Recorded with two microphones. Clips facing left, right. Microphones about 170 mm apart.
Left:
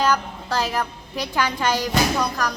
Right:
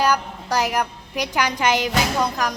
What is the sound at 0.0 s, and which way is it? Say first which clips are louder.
A woman's voice: right 1 dB; 15° right (ahead or behind).